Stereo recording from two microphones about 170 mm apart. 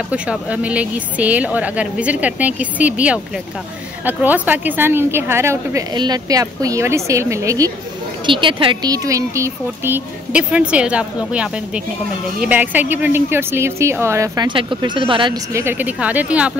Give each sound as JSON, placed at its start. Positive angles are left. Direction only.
{"t": 0.1, "sound": "a woman's voice", "side_deg": -5}
{"t": 8.3, "sound": "a woman's voice", "side_deg": -30}
{"t": 15.5, "sound": "a woman's voice", "side_deg": -10}